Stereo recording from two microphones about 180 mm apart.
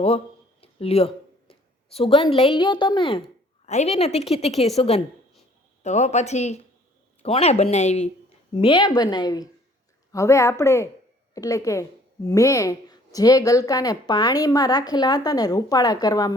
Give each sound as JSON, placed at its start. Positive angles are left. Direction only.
{"t": 0.6, "sound": "a woman's voice", "side_deg": 35}
{"t": 8.5, "sound": "a woman's voice", "side_deg": 25}